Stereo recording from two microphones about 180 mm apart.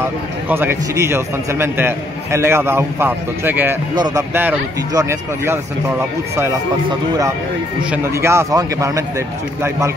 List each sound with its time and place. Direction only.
0.5 s a man's voice: 15° right (ahead or behind)
3.9 s speech: 25° right (ahead or behind)
4.3 s a man's voice: 10° right (ahead or behind)
7.9 s a man's voice: 15° right (ahead or behind)